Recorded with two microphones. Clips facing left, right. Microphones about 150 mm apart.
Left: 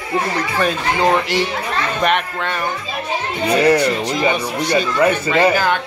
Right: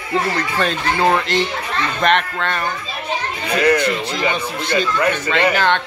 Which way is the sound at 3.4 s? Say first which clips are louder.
Left 3 dB; 35° left (ahead or behind).